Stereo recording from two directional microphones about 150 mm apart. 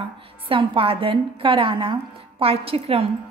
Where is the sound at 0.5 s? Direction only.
35° right (ahead or behind).